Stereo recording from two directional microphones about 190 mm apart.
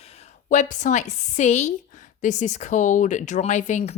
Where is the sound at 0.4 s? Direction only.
40° left (ahead or behind).